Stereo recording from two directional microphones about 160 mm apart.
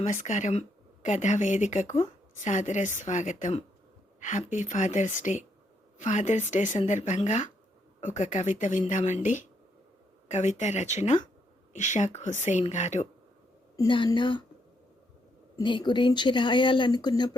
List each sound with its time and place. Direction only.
0.0 s a woman's voice: 50° left (ahead or behind)
13.7 s speech: 30° left (ahead or behind)
15.5 s speech: 30° left (ahead or behind)